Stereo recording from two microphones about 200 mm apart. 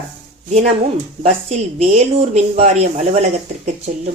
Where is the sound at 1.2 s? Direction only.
30° right (ahead or behind).